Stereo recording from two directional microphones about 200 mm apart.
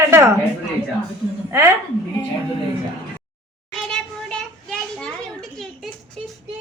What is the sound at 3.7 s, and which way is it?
Children playing, 5° left (ahead or behind).